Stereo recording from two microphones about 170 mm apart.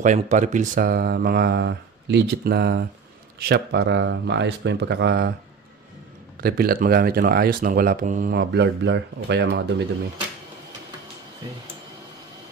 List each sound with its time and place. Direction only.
0.0 s speech: 45° right (ahead or behind); by 5.3 s 75° right (ahead or behind)
6.4 s speech: 60° right (ahead or behind)
8.4 s speech: 85° right